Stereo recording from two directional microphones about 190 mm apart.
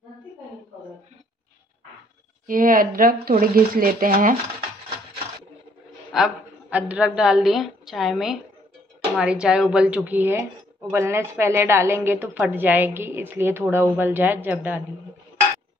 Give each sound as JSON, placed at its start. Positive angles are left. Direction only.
{"t": 2.4, "sound": "speech", "side_deg": -45}
{"t": 6.1, "sound": "a man's voice", "side_deg": -5}